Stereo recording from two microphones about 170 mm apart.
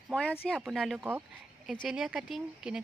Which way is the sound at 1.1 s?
10° right (ahead or behind).